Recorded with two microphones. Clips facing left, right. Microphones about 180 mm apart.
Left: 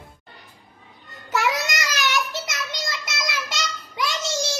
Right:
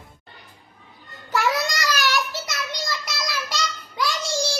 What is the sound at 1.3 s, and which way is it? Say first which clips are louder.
Child singing: right 1 dB; 20° left (ahead or behind).